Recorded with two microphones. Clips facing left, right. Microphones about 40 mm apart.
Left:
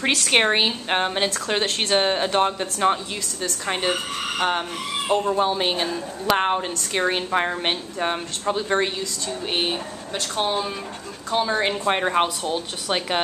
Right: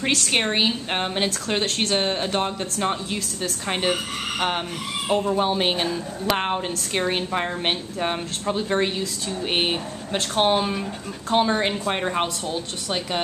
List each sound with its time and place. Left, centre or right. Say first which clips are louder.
0.0 s speech: left 1 dB; centre
0.3 s speech: left 7 dB; left
0.6 s speech: left 1 dB; centre
3.4 s a woman's voice: even; centre
7.6 s a woman's voice: even; centre
9.5 s speech: right 1 dB; centre
10.1 s speech: right 4 dB; right
11.4 s a woman's voice: even; centre
11.7 s speech: left 3 dB; centre